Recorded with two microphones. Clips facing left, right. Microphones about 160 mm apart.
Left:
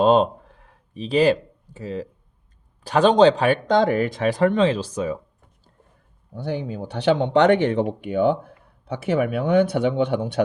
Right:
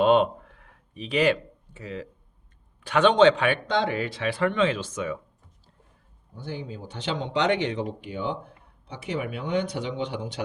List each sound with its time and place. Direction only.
0.0 s a sound: 35° left (ahead or behind)
2.8 s speech: 35° left (ahead or behind)
6.3 s speech: 60° left (ahead or behind)